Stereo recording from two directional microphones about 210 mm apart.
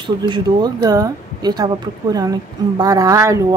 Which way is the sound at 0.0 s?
20° right (ahead or behind).